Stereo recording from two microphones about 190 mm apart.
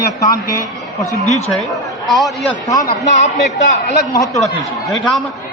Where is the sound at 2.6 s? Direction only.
20° left (ahead or behind).